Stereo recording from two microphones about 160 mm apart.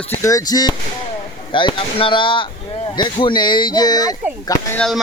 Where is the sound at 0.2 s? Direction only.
20° left (ahead or behind).